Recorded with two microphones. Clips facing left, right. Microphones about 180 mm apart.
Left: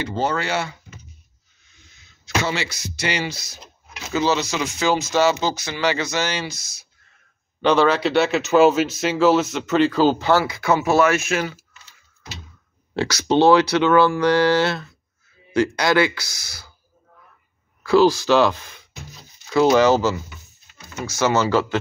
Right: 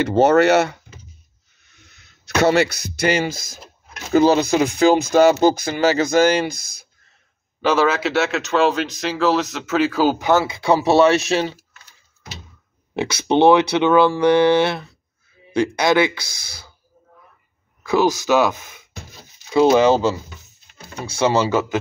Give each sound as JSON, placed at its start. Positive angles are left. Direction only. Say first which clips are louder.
{"t": 0.0, "sound": "speech", "louder": "right 10 dB", "side_deg": -70}
{"t": 7.6, "sound": "speech", "louder": "left 1 dB", "side_deg": -5}
{"t": 10.3, "sound": "speech", "louder": "right 2 dB", "side_deg": -25}
{"t": 12.9, "sound": "speech", "louder": "right 1 dB", "side_deg": -20}
{"t": 17.8, "sound": "speech", "louder": "left 2 dB", "side_deg": -20}
{"t": 21.4, "sound": "speech", "louder": "right 1 dB", "side_deg": -15}